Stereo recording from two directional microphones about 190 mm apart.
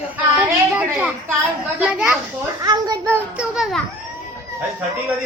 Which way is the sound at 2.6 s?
20° right (ahead or behind).